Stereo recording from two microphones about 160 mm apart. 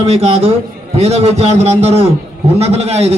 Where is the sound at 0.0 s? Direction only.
40° right (ahead or behind).